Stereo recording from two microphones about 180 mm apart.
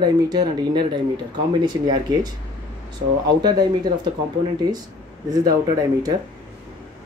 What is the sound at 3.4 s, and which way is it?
Speech, 25° right (ahead or behind).